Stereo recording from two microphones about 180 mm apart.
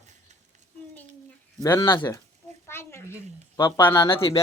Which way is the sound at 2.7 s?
15° left (ahead or behind).